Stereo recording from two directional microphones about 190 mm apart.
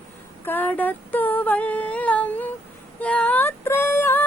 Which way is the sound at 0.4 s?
10° left (ahead or behind).